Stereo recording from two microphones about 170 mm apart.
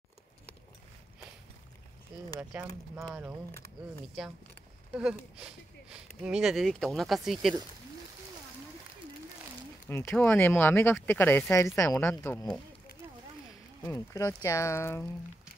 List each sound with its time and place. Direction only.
4.9 s speech: 5° right (ahead or behind)
9.8 s speech: 10° left (ahead or behind)
13.8 s speech: 15° left (ahead or behind)